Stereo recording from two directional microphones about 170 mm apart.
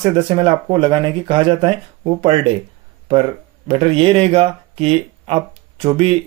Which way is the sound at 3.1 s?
35° right (ahead or behind).